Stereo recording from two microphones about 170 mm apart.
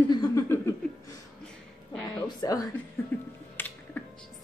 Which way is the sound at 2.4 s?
20° left (ahead or behind).